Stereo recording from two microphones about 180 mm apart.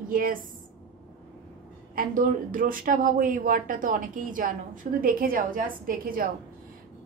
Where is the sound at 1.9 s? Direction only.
50° right (ahead or behind).